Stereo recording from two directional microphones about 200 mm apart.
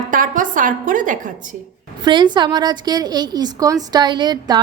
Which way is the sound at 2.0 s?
20° right (ahead or behind).